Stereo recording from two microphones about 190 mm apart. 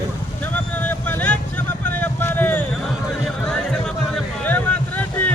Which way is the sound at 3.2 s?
5° left (ahead or behind).